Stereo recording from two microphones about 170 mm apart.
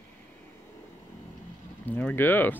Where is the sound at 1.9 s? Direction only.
10° left (ahead or behind).